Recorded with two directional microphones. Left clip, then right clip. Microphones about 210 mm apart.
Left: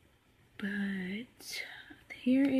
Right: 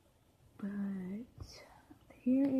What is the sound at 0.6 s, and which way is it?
Speech, 10° left (ahead or behind).